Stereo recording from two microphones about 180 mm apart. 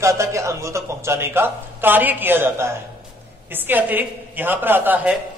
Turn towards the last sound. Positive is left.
turn(degrees=-10)  # may be behind; listen again after turning